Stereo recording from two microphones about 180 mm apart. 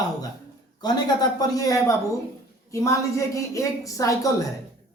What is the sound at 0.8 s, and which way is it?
A woman's voice, 25° left (ahead or behind).